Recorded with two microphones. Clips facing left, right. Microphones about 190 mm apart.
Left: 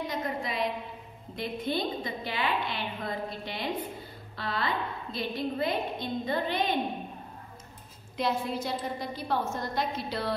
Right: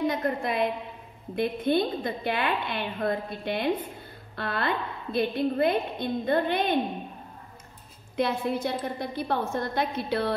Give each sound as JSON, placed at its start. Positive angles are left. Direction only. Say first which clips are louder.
{"t": 0.0, "sound": "a woman's voice", "louder": "right 6 dB", "side_deg": -55}
{"t": 8.2, "sound": "a woman's voice", "louder": "right 4 dB", "side_deg": -55}